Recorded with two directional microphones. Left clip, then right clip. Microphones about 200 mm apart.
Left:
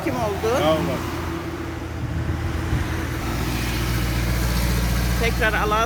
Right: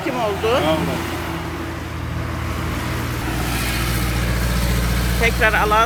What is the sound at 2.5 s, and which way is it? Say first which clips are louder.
Vehicle: right 3 dB; 55° right (ahead or behind).